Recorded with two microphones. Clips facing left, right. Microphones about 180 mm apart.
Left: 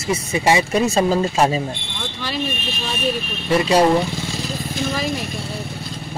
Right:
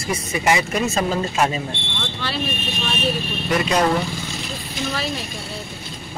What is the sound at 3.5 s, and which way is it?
Speech, 30° left (ahead or behind).